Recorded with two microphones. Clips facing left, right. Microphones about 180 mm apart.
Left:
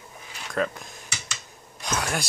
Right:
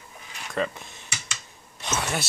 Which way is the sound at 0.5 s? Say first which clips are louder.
Left 1 dB; centre (ahead or behind).